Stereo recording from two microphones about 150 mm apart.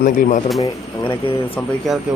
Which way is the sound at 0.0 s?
60° left (ahead or behind).